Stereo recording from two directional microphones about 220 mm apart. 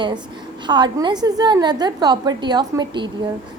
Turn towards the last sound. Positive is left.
turn(degrees=-20)  # may be behind; listen again after turning